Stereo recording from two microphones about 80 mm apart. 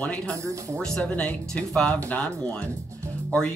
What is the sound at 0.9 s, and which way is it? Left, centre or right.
Speech, centre.